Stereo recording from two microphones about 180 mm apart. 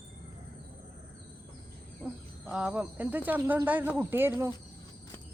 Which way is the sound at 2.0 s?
5° right (ahead or behind).